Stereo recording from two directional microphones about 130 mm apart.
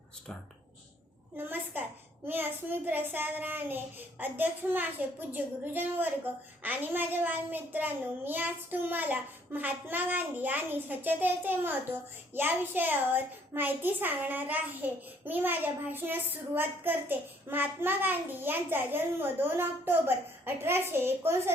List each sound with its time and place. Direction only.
1.4 s a child's voice: 15° right (ahead or behind)